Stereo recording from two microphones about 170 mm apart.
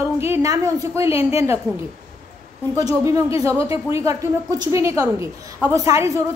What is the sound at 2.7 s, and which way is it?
Speech, 20° right (ahead or behind).